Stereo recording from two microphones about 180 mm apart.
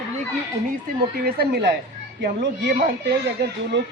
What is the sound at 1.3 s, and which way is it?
Speech, 60° right (ahead or behind).